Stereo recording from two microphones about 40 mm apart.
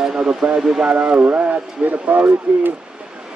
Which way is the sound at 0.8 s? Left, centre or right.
Right.